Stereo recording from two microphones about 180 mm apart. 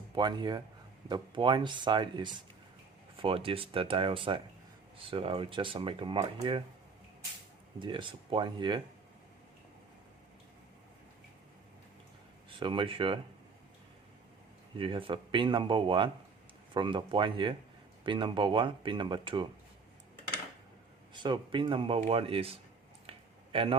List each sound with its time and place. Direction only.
0.2 s speech: 25° right (ahead or behind)
7.8 s speech: 25° right (ahead or behind)
12.5 s speech: 30° right (ahead or behind)
14.8 s speech: 30° right (ahead or behind)
21.1 s speech: 25° right (ahead or behind)
23.0 s a sound: 30° right (ahead or behind)